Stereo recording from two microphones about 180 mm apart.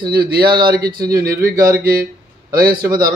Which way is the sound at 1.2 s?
55° right (ahead or behind).